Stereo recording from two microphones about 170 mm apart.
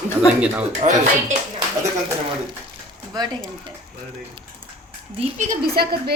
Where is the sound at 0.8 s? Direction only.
45° right (ahead or behind).